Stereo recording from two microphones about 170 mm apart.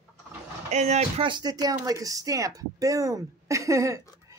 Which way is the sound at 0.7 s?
45° right (ahead or behind).